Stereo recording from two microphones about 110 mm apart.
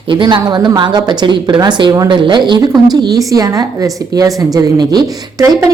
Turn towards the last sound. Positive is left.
turn(degrees=-35)  # may be behind; listen again after turning